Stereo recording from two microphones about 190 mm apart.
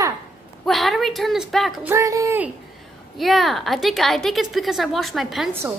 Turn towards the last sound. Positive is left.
turn(degrees=0)  # may be behind; listen again after turning